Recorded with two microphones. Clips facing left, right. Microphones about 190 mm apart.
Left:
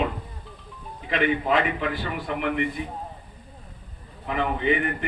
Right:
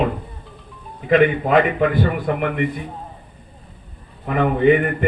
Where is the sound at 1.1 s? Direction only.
50° right (ahead or behind).